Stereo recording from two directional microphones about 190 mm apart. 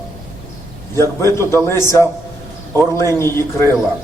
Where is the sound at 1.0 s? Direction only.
15° left (ahead or behind).